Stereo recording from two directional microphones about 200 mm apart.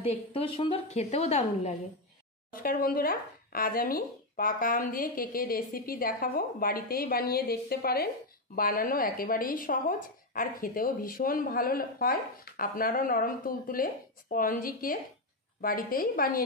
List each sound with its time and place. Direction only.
0.0 s a woman's voice: 30° left (ahead or behind)
2.5 s speech: 45° left (ahead or behind)